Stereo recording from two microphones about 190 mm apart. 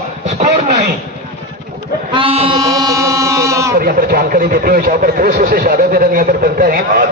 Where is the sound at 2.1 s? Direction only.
30° right (ahead or behind).